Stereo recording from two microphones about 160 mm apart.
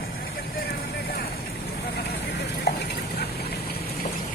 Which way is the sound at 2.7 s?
90° left.